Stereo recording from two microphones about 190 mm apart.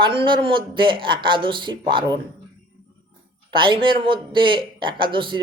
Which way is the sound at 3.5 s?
25° right (ahead or behind).